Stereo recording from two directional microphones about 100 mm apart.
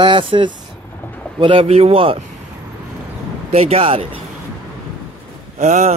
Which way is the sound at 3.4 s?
90° right.